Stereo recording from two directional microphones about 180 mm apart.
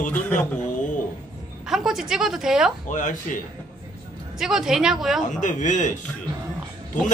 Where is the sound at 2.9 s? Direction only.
45° left (ahead or behind).